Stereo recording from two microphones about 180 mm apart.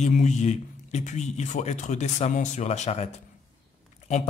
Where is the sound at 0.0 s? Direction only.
40° left (ahead or behind).